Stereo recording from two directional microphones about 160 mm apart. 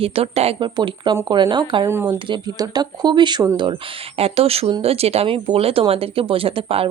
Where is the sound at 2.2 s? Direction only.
30° right (ahead or behind).